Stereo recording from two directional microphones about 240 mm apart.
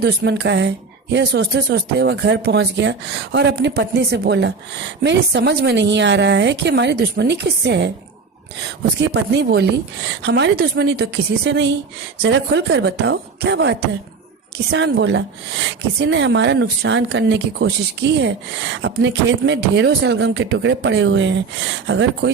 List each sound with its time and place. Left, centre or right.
0.0 s speech: right
9.0 s speech: right